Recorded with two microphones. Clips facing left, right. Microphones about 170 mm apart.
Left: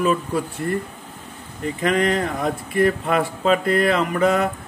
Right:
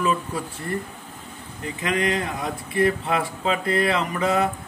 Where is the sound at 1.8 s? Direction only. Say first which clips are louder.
Left 4 dB; 55° left (ahead or behind).